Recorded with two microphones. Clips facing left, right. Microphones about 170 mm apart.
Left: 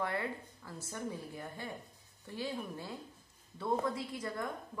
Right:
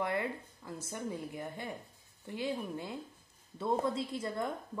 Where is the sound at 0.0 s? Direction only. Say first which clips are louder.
Right 2 dB; 20° right (ahead or behind).